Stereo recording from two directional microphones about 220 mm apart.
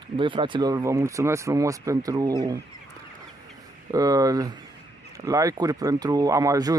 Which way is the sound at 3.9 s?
15° right (ahead or behind).